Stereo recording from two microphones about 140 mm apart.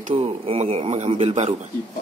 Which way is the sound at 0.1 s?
40° right (ahead or behind).